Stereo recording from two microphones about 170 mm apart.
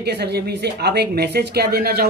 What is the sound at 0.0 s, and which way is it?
A woman's voice, 80° right.